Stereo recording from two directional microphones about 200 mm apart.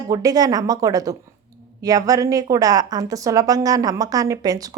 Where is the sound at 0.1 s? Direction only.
20° right (ahead or behind).